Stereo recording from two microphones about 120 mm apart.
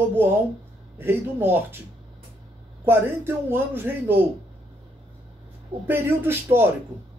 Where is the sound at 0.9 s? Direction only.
20° right (ahead or behind).